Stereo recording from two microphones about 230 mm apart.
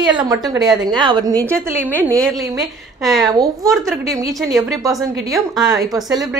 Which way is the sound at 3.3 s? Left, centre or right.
Centre.